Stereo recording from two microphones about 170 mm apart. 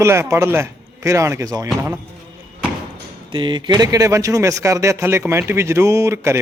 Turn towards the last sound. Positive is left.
turn(degrees=-15)  # may be behind; listen again after turning